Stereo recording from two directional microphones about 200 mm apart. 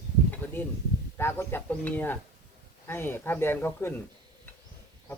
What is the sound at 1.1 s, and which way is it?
Speech, 10° left (ahead or behind).